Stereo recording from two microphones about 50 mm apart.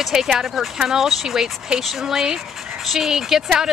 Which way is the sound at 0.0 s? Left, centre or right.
Centre.